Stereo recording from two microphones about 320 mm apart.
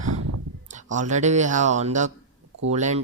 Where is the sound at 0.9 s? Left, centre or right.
Right.